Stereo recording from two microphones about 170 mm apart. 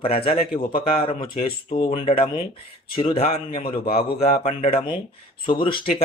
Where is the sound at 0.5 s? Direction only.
60° left (ahead or behind).